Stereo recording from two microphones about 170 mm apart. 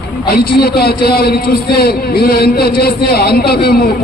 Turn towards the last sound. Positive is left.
turn(degrees=65)  # may be behind; listen again after turning